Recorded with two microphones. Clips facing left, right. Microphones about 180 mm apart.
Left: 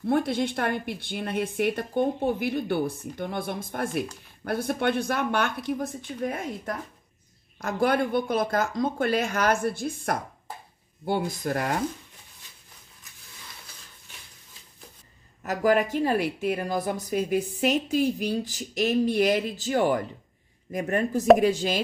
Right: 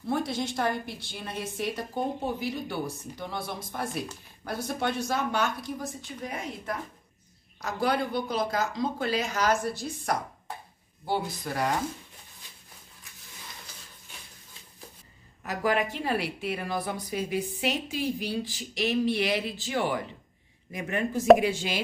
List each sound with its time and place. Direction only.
0.0 s a woman's voice: 55° left (ahead or behind)
15.4 s a woman's voice: 45° left (ahead or behind)